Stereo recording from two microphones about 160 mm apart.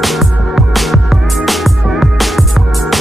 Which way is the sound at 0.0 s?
Centre (ahead or behind).